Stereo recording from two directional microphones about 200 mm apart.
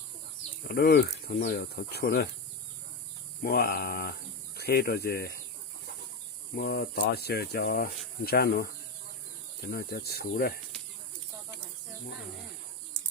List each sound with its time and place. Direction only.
0.6 s speech: 50° left (ahead or behind)
3.4 s speech: 50° left (ahead or behind)
6.5 s speech: 55° left (ahead or behind)